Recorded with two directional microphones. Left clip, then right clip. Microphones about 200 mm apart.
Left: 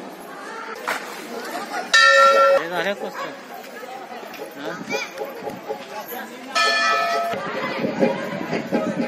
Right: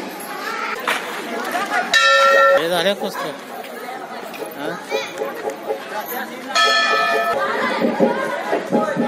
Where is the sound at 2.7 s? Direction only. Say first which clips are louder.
Right 6 dB; 70° right (ahead or behind).